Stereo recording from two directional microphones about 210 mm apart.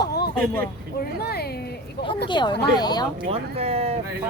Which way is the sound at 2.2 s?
20° left (ahead or behind).